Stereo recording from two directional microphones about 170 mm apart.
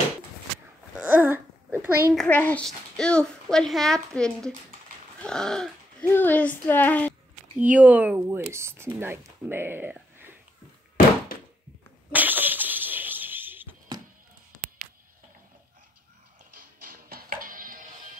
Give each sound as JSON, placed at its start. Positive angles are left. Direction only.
{"t": 0.9, "sound": "babbling", "side_deg": -10}
{"t": 2.1, "sound": "speech", "side_deg": 10}
{"t": 7.5, "sound": "speech", "side_deg": -10}
{"t": 12.1, "sound": "a sound", "side_deg": -10}
{"t": 16.5, "sound": "music", "side_deg": -55}